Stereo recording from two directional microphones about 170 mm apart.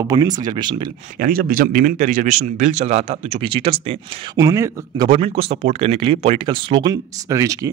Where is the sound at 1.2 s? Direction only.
55° right (ahead or behind); by 3.7 s 30° right (ahead or behind).